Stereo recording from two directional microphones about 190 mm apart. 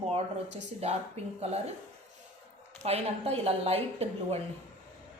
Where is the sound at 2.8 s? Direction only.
30° right (ahead or behind).